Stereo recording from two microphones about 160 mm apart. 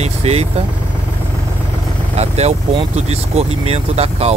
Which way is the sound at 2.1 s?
40° right (ahead or behind).